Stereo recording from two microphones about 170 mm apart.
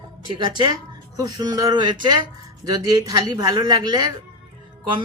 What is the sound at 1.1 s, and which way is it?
Speech, 20° right (ahead or behind).